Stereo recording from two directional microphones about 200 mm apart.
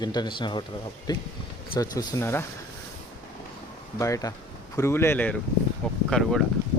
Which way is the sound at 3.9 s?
15° left (ahead or behind).